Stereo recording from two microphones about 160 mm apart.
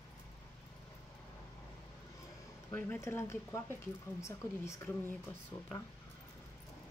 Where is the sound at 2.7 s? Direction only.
15° left (ahead or behind).